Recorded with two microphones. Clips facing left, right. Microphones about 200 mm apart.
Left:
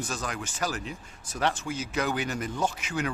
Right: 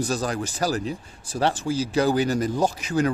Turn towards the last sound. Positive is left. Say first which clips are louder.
# right 7 dB
turn(degrees=-35)  # may be behind; listen again after turning